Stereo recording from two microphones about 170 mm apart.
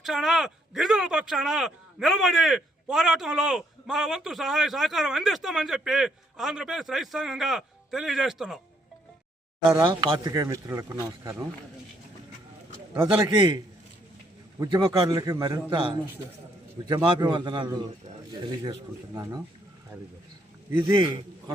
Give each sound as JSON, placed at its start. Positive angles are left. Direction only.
{"t": 0.0, "sound": "speech", "side_deg": 0}
{"t": 9.7, "sound": "speech", "side_deg": -25}
{"t": 13.0, "sound": "speech", "side_deg": -25}
{"t": 14.6, "sound": "speech", "side_deg": -20}